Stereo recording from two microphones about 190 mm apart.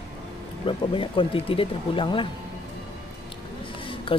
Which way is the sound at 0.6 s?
25° left (ahead or behind).